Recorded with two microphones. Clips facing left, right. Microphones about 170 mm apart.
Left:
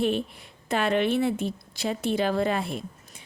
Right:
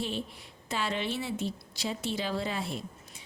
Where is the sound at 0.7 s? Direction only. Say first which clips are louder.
Left 9 dB; 60° left (ahead or behind).